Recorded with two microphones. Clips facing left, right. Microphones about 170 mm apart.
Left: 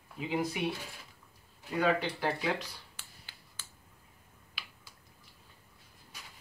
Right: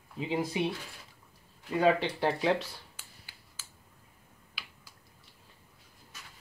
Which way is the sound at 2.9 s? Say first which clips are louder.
Even; 10° right (ahead or behind).